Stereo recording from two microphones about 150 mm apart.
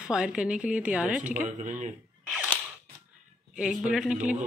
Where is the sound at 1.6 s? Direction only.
55° right (ahead or behind).